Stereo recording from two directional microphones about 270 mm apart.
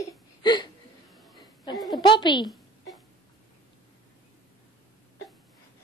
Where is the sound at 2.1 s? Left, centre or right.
Centre.